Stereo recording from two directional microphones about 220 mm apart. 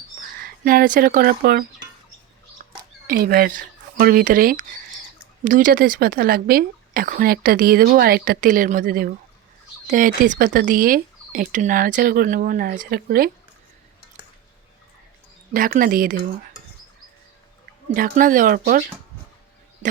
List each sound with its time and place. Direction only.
0.4 s a woman's voice: 40° right (ahead or behind)
3.1 s a woman's voice: 40° right (ahead or behind)
15.5 s a woman's voice: 40° right (ahead or behind)
17.9 s a woman's voice: 40° right (ahead or behind)